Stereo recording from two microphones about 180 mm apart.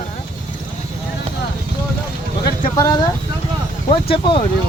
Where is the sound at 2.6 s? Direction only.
20° left (ahead or behind).